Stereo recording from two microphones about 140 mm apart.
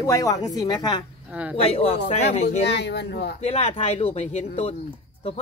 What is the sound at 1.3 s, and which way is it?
Speech, 10° right (ahead or behind).